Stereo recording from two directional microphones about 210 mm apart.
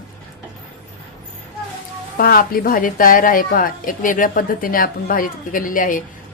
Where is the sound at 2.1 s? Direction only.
45° left (ahead or behind).